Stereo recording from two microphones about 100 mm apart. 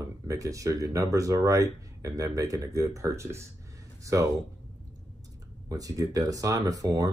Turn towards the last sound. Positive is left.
turn(degrees=-35)  # may be behind; listen again after turning